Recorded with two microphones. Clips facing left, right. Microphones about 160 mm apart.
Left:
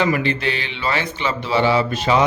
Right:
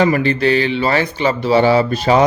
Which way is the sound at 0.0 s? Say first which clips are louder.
Right 5 dB; 40° right (ahead or behind).